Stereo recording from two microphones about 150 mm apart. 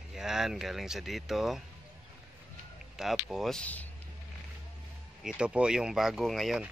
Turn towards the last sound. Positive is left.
turn(degrees=0)  # may be behind; listen again after turning